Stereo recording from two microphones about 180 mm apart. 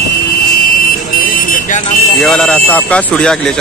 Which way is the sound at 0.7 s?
55° left (ahead or behind).